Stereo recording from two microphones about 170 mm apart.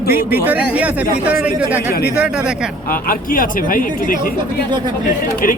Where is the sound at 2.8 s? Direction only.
55° left (ahead or behind).